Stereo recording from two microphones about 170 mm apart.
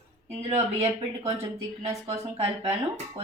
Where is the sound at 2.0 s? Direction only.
40° right (ahead or behind).